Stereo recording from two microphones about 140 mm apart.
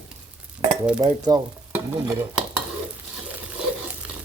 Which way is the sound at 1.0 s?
30° right (ahead or behind).